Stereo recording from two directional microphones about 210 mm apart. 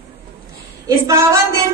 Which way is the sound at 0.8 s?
15° right (ahead or behind).